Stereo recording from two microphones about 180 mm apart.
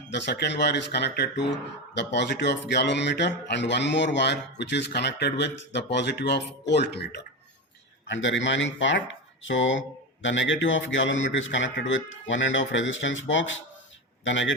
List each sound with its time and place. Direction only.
0.1 s speech: 75° left (ahead or behind)
8.0 s a man's voice: 90° left